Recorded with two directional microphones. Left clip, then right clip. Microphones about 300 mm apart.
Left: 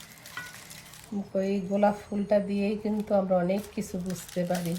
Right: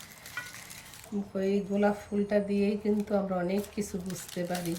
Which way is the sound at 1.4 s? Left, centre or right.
Centre.